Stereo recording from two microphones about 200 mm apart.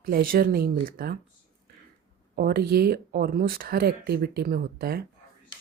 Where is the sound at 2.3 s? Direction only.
50° right (ahead or behind).